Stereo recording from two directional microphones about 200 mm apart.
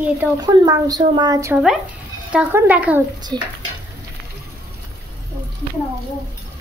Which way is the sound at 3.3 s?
20° right (ahead or behind).